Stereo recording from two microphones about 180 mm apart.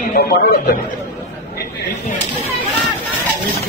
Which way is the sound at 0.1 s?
55° left (ahead or behind).